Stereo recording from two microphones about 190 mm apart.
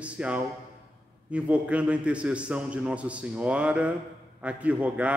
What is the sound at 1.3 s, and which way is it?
A man's voice, 5° right (ahead or behind).